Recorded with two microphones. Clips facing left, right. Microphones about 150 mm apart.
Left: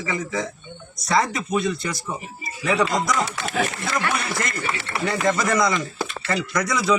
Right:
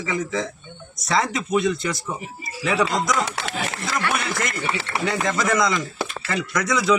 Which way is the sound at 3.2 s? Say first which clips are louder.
Even; 90° right.